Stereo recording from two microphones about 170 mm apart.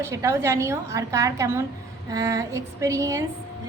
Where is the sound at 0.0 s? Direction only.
15° right (ahead or behind).